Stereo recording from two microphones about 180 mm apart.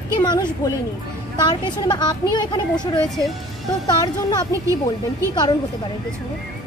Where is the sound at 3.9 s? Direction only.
20° left (ahead or behind).